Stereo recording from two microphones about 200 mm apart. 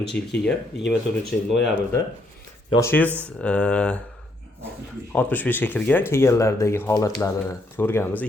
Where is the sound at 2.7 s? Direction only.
10° left (ahead or behind).